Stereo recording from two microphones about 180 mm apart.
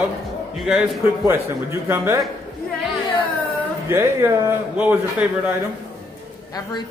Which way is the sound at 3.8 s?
15° right (ahead or behind).